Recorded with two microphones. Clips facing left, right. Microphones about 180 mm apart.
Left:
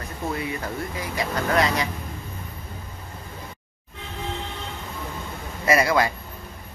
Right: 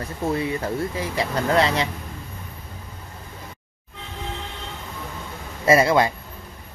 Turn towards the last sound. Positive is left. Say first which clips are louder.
# right 3 dB
turn(degrees=-25)  # may be behind; listen again after turning